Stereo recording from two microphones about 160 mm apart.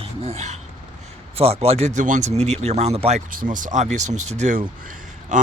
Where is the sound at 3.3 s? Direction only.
60° right (ahead or behind).